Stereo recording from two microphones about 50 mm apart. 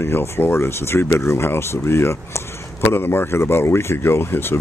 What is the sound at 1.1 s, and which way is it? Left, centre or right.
Speech, left.